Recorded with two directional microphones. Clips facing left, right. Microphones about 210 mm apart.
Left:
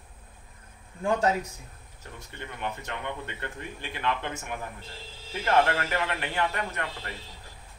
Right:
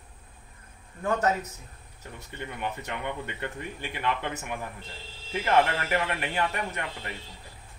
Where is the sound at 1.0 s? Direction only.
10° left (ahead or behind).